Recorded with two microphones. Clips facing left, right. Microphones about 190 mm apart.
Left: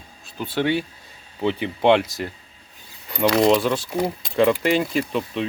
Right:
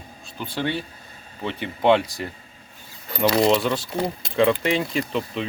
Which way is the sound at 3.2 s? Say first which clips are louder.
Left 2 dB; 5° right (ahead or behind).